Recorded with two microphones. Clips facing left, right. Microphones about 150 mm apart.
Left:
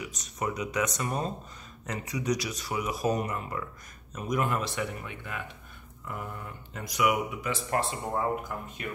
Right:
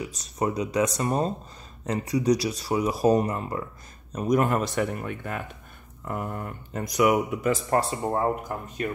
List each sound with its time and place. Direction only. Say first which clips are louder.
0.0 s speech: right 6 dB; 30° right (ahead or behind)